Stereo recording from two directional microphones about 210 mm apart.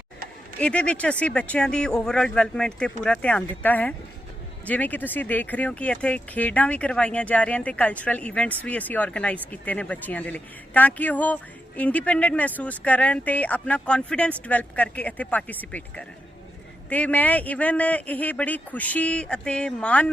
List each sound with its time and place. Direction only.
0.6 s speech: 5° left (ahead or behind)